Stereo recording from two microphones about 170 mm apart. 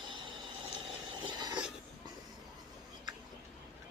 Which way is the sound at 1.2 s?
25° right (ahead or behind).